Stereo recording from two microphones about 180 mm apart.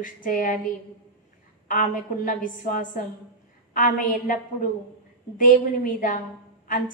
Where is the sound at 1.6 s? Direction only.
50° left (ahead or behind).